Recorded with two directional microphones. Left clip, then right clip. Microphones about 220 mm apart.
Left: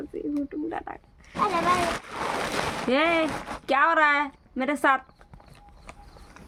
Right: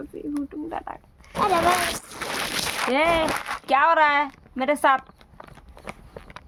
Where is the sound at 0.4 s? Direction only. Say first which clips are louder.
Even; 10° right (ahead or behind).